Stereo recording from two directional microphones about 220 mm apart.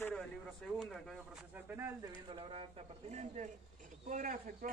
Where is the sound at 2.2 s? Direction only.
25° right (ahead or behind).